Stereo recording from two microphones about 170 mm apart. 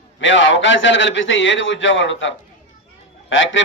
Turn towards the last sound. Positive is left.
turn(degrees=90)